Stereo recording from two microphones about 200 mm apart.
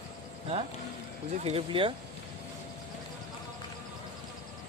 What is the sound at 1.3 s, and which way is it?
Speech, 30° right (ahead or behind).